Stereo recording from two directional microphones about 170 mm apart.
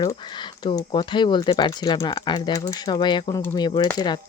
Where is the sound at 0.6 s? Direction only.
25° left (ahead or behind).